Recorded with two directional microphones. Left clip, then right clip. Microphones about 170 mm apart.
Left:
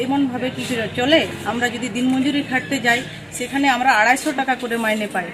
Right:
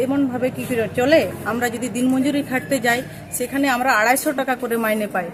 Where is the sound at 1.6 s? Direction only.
35° right (ahead or behind).